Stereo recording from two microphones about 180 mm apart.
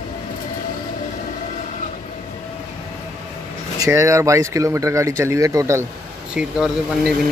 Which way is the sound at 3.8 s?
15° right (ahead or behind).